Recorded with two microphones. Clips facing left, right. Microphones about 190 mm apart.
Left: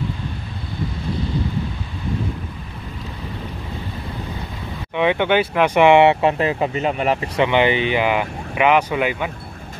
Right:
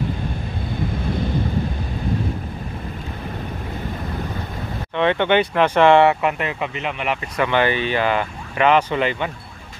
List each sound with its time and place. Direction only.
4.9 s speech: 10° left (ahead or behind)
6.2 s speech: 30° left (ahead or behind)
7.3 s speech: 20° left (ahead or behind)